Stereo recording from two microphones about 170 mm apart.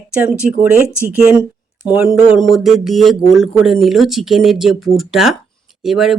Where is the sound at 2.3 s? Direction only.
Centre (ahead or behind).